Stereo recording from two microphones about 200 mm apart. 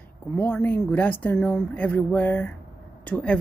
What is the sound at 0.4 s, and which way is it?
Speech, 10° left (ahead or behind).